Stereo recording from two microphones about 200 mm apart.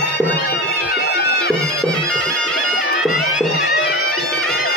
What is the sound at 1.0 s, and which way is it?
Music, 55° left (ahead or behind).